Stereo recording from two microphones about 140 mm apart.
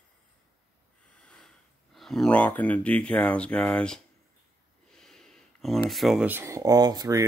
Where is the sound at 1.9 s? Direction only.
Centre (ahead or behind).